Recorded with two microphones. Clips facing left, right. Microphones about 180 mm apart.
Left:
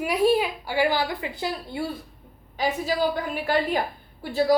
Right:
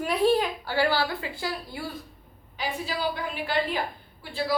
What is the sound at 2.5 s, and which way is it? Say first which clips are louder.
A woman's voice: left 6 dB; 45° left (ahead or behind).